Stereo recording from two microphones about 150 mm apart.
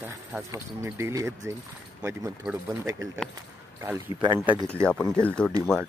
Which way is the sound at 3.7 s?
15° right (ahead or behind).